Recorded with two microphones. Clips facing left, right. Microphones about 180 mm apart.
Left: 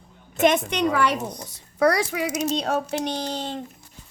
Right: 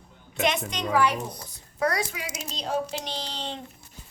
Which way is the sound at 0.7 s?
65° left (ahead or behind).